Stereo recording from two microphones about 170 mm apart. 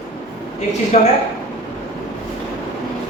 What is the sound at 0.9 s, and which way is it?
Speech, 40° left (ahead or behind).